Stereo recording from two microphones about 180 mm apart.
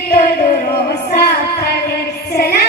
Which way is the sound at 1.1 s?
65° left (ahead or behind).